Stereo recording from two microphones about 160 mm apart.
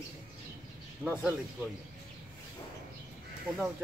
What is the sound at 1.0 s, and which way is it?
Speech, centre (ahead or behind).